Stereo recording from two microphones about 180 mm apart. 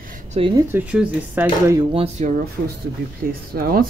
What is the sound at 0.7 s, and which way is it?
Speech, 10° right (ahead or behind).